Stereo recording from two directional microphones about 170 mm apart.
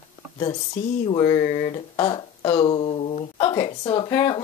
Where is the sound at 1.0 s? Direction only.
25° left (ahead or behind).